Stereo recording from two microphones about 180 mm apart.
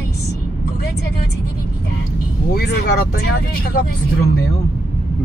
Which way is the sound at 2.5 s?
60° left (ahead or behind).